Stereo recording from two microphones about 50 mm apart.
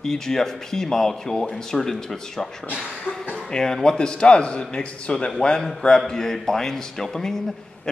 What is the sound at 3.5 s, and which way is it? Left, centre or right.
A man's voice, centre.